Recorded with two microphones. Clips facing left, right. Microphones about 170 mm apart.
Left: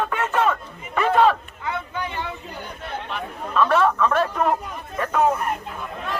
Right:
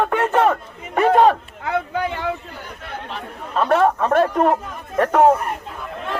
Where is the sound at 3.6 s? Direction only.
45° right (ahead or behind).